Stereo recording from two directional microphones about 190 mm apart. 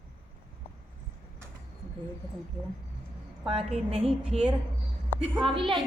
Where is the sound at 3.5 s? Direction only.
30° right (ahead or behind).